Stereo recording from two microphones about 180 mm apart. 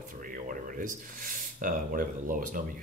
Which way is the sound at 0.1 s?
50° right (ahead or behind).